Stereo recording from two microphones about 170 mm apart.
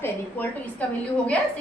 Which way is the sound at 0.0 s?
10° left (ahead or behind).